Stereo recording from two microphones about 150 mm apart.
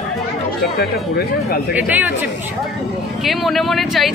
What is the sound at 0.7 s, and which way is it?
Speech, 90° left.